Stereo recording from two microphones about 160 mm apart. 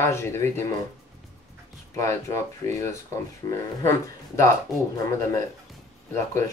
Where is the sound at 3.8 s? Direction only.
20° left (ahead or behind).